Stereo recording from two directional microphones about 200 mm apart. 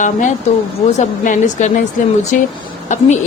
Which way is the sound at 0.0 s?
40° left (ahead or behind).